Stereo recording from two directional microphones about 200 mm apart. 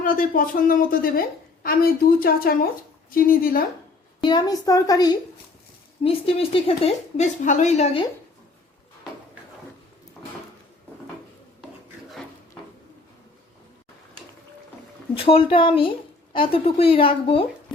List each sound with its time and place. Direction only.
0.0 s speech: 45° left (ahead or behind)
4.2 s a woman's voice: 20° left (ahead or behind)
6.0 s a woman's voice: 30° left (ahead or behind)
15.1 s a woman's voice: 25° left (ahead or behind)